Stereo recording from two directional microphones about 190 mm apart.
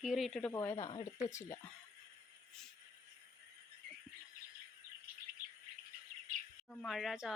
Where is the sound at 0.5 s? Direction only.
15° left (ahead or behind).